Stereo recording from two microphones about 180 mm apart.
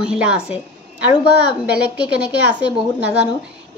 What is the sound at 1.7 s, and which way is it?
A woman's voice, 5° right (ahead or behind).